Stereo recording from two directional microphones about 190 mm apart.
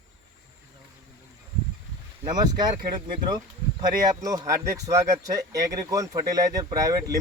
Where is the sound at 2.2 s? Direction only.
20° right (ahead or behind).